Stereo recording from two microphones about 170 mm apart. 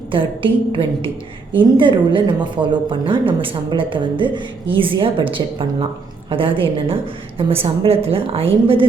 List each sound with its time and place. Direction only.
0.1 s a woman's voice: 30° right (ahead or behind)